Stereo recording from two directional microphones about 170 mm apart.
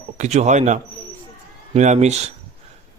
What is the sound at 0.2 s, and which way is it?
A man's voice, 45° right (ahead or behind).